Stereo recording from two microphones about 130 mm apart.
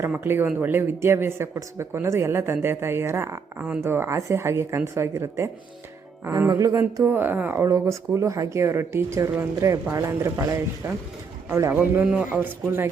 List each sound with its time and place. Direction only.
0.0 s speech: 15° right (ahead or behind)